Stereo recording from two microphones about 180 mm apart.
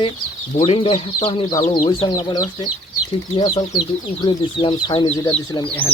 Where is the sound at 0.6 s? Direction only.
30° left (ahead or behind).